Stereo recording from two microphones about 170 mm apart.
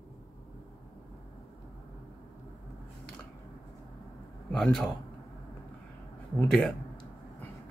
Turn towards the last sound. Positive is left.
turn(degrees=0)  # may be behind; listen again after turning